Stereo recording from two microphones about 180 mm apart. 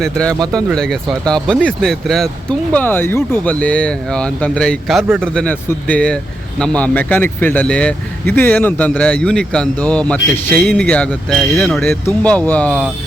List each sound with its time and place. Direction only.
0.0 s speech: 5° left (ahead or behind)
0.3 s speech: 20° right (ahead or behind)
0.7 s speech: 5° left (ahead or behind)